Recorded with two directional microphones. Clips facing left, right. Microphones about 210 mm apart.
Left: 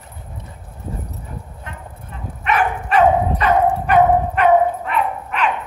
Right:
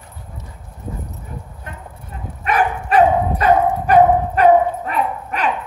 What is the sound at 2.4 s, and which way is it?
Dog, 40° right (ahead or behind).